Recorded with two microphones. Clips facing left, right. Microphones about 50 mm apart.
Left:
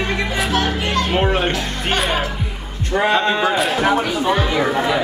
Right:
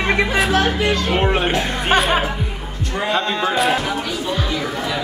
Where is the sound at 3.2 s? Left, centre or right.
Centre.